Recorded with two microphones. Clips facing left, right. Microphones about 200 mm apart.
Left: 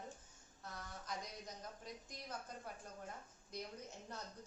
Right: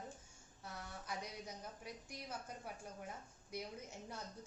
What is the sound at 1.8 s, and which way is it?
A woman's voice, 10° right (ahead or behind).